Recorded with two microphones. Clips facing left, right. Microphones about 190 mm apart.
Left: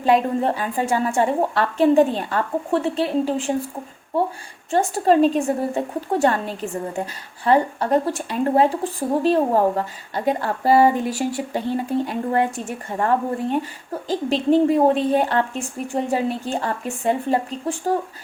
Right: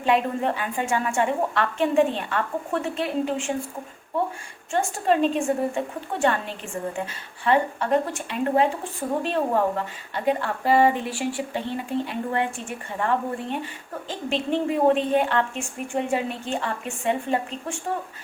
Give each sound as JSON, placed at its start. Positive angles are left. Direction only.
{"t": 0.0, "sound": "a woman's voice", "side_deg": 35}
{"t": 4.7, "sound": "a woman's voice", "side_deg": 35}